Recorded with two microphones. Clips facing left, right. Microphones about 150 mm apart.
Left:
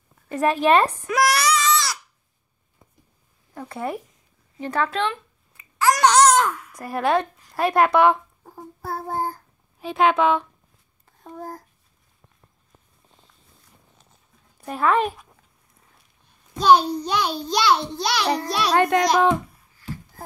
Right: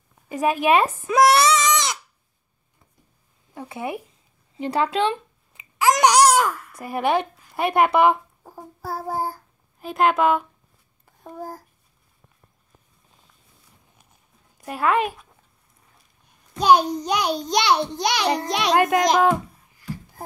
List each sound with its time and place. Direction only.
0.3 s a woman's voice: 5° right (ahead or behind)
1.0 s goat: 25° right (ahead or behind)
3.5 s a woman's voice: 5° right (ahead or behind)
4.6 s a child's voice: 15° right (ahead or behind)
14.6 s speech: 10° right (ahead or behind)
16.6 s a child's voice: 15° right (ahead or behind)
18.8 s a woman's voice: 5° right (ahead or behind)